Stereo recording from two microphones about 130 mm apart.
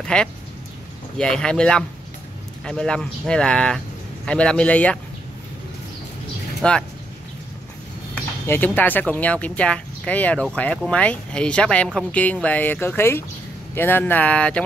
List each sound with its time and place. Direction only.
0.0 s speech: 5° left (ahead or behind)
6.6 s speech: 5° left (ahead or behind)
8.1 s speech: 15° left (ahead or behind)